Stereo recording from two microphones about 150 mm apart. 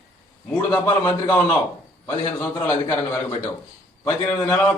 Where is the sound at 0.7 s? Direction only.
20° left (ahead or behind).